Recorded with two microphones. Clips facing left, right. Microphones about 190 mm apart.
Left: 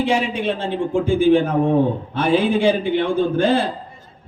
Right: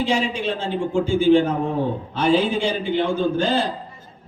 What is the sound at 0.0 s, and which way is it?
A man's voice, 55° left (ahead or behind).